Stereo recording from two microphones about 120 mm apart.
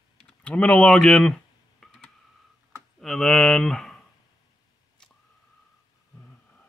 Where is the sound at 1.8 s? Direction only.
5° left (ahead or behind).